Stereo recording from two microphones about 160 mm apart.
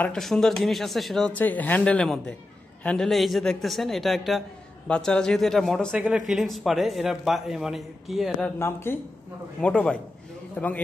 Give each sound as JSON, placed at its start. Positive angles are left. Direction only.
{"t": 0.0, "sound": "speech", "side_deg": 5}
{"t": 8.5, "sound": "a man's voice", "side_deg": 15}